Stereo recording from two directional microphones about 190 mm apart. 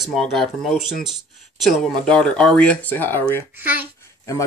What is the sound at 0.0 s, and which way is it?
Speech, centre (ahead or behind).